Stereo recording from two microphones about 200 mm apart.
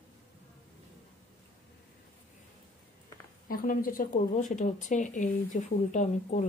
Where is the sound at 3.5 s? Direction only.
45° left (ahead or behind).